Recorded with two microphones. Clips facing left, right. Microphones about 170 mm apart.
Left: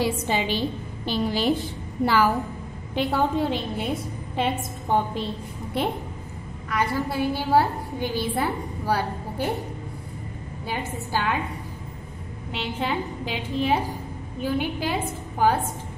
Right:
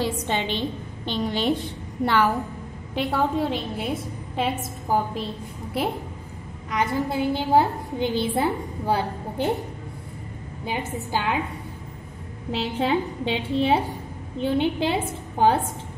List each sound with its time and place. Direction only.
0.0 s a woman's voice: 5° left (ahead or behind)
6.7 s a woman's voice: 20° right (ahead or behind)
10.6 s a woman's voice: 20° right (ahead or behind)
12.4 s a woman's voice: 35° right (ahead or behind)